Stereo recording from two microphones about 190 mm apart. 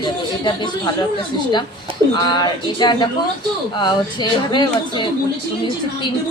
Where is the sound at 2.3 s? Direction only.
25° left (ahead or behind).